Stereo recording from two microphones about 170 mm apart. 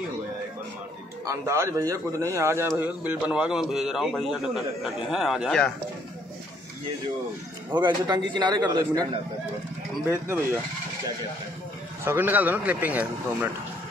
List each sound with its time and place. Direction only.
1.2 s a man's voice: 15° right (ahead or behind); by 5.7 s centre (ahead or behind)
7.7 s a man's voice: 25° right (ahead or behind)
10.0 s speech: 10° right (ahead or behind)
12.0 s speech: 15° right (ahead or behind)